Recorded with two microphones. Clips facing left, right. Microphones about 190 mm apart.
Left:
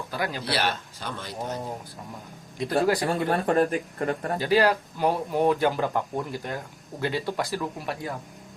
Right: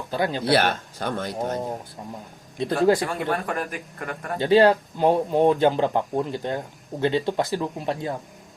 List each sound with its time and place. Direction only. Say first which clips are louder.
0.1 s speech: right 7 dB; 25° right (ahead or behind)
0.5 s speech: right 6 dB; 55° right (ahead or behind)
2.6 s speech: right 4 dB; 25° right (ahead or behind)
3.0 s speech: left 1 dB; 30° left (ahead or behind)
4.4 s speech: right 6 dB; 25° right (ahead or behind)